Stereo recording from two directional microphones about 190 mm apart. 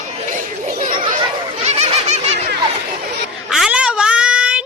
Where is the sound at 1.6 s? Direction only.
35° right (ahead or behind).